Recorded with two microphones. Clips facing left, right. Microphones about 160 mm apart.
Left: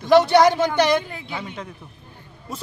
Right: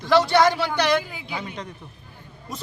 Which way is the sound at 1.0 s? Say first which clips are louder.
Left 1 dB; centre (ahead or behind).